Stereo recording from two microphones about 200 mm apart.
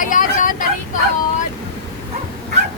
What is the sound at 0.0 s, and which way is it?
Vehicle, 40° left (ahead or behind).